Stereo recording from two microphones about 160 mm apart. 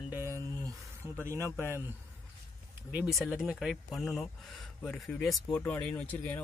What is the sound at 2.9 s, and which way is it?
Speech, 5° right (ahead or behind).